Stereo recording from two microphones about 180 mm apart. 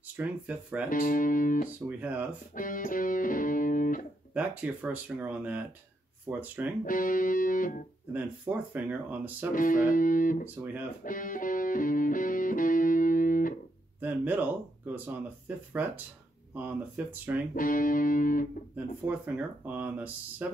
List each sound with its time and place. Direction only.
0.2 s speech: 5° right (ahead or behind)
0.8 s music: 50° left (ahead or behind)
1.9 s speech: 10° right (ahead or behind)
2.5 s music: 50° left (ahead or behind)
4.3 s speech: 5° right (ahead or behind)
6.8 s music: 50° left (ahead or behind)
8.1 s speech: 10° right (ahead or behind)
9.6 s music: 50° left (ahead or behind)
10.4 s speech: 10° right (ahead or behind)
11.1 s music: 50° left (ahead or behind)
14.0 s speech: 10° right (ahead or behind)
17.6 s music: 50° left (ahead or behind)
19.0 s speech: 10° right (ahead or behind)